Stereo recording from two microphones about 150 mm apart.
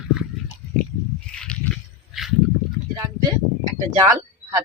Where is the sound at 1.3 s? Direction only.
5° left (ahead or behind).